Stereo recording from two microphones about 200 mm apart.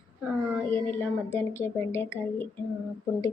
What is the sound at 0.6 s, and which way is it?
Speech, 10° left (ahead or behind).